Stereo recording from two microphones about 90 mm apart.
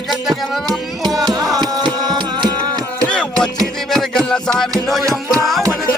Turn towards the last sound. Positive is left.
turn(degrees=0)  # may be behind; listen again after turning